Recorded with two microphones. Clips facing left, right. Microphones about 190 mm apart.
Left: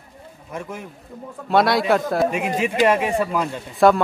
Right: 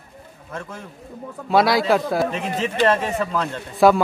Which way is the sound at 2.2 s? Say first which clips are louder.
Left 2 dB; 10° left (ahead or behind).